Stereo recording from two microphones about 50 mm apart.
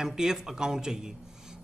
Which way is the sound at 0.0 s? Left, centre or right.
Centre.